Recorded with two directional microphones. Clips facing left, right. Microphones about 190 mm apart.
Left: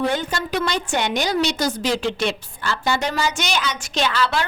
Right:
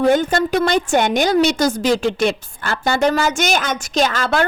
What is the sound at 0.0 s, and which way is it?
A woman's voice, 45° right (ahead or behind).